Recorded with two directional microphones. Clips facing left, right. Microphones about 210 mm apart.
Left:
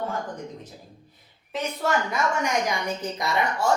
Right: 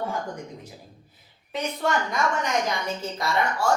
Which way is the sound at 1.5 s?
Centre (ahead or behind).